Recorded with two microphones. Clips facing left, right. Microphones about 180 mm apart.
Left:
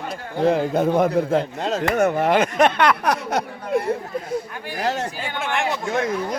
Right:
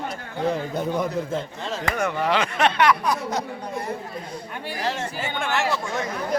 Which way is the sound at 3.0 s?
65° left (ahead or behind).